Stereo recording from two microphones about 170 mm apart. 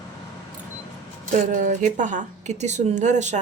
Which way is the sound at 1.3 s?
45° right (ahead or behind).